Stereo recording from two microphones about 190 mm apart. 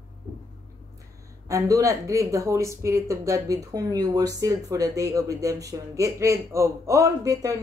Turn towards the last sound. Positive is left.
turn(degrees=-15)  # may be behind; listen again after turning